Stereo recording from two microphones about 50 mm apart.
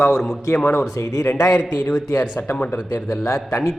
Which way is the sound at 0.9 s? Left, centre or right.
Left.